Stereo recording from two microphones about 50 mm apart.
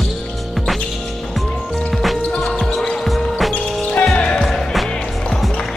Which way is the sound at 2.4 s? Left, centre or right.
Centre.